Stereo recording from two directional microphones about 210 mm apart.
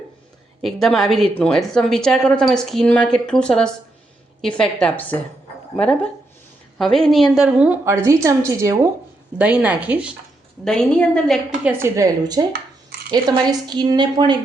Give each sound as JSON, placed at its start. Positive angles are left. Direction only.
{"t": 0.6, "sound": "a woman's voice", "side_deg": 0}
{"t": 11.6, "sound": "a woman's voice", "side_deg": -15}